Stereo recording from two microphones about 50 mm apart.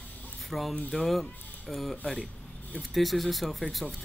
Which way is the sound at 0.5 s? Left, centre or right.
Centre.